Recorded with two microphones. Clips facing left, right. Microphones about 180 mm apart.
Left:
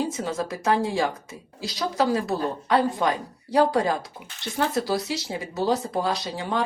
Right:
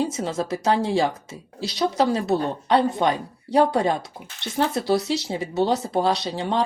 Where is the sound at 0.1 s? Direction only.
20° right (ahead or behind).